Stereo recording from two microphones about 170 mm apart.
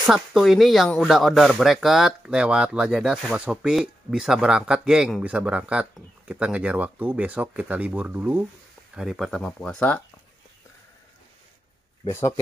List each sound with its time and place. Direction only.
0.0 s speech: centre (ahead or behind)
12.1 s speech: 15° left (ahead or behind)